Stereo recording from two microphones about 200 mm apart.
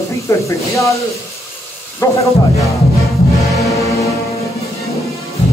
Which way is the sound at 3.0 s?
Centre (ahead or behind).